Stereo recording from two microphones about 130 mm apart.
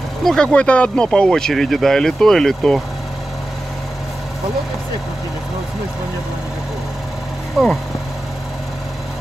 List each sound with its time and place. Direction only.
0.2 s speech: 5° left (ahead or behind)